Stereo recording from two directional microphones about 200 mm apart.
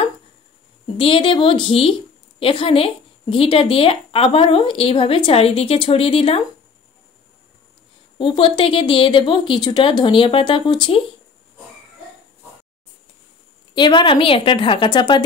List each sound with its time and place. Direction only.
0.9 s a woman's voice: 25° left (ahead or behind)
8.2 s a woman's voice: 25° left (ahead or behind)
13.7 s a woman's voice: 25° left (ahead or behind)